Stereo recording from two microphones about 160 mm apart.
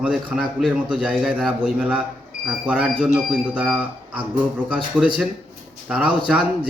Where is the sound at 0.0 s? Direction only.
5° right (ahead or behind).